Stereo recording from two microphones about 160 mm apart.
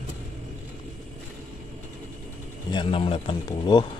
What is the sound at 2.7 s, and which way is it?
Speech, 35° left (ahead or behind).